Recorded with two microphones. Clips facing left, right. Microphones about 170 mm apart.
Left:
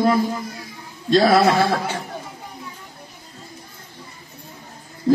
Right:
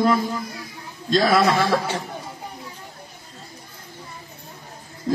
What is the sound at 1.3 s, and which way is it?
Speech, 35° left (ahead or behind).